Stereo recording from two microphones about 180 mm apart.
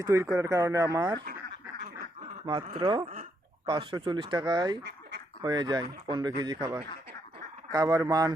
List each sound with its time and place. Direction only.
0.0 s speech: 15° right (ahead or behind)
2.5 s speech: 25° right (ahead or behind)